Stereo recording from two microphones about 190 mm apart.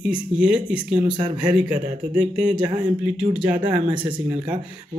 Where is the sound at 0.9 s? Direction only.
25° right (ahead or behind).